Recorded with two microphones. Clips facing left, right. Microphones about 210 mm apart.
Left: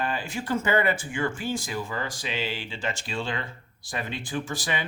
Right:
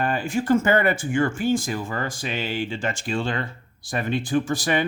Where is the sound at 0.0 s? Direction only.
50° right (ahead or behind).